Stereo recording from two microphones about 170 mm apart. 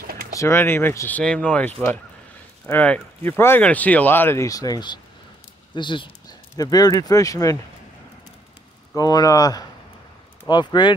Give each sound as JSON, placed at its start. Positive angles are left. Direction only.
{"t": 0.0, "sound": "a sound", "side_deg": -60}
{"t": 0.4, "sound": "speech", "side_deg": 15}
{"t": 8.9, "sound": "speech", "side_deg": 20}